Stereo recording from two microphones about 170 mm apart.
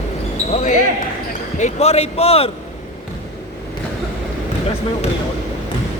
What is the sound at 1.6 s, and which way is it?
Speech, 40° left (ahead or behind).